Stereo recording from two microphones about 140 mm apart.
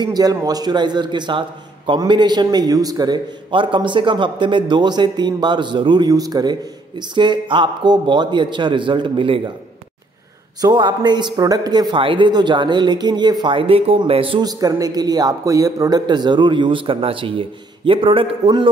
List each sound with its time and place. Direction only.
0.0 s a man's voice: 30° right (ahead or behind)
10.6 s a man's voice: 30° right (ahead or behind)
14.4 s a man's voice: 25° right (ahead or behind)